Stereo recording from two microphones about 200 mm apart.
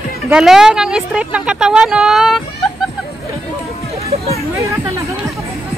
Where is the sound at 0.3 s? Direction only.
5° right (ahead or behind).